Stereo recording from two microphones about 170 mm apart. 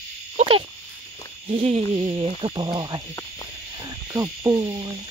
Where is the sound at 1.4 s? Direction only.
35° right (ahead or behind).